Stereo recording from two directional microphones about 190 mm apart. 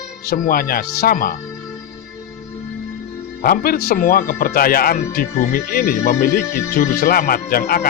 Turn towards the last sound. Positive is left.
turn(degrees=55)  # may be behind; listen again after turning